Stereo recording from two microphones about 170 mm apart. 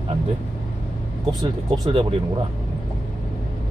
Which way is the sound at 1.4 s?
25° right (ahead or behind).